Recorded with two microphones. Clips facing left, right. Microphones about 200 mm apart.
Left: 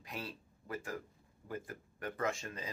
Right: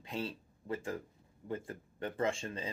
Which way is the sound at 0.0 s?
25° right (ahead or behind).